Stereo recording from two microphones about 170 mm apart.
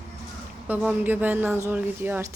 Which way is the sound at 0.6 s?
10° right (ahead or behind).